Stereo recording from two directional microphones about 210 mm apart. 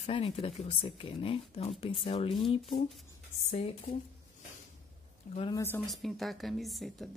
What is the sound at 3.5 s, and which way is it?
Speech, 30° left (ahead or behind).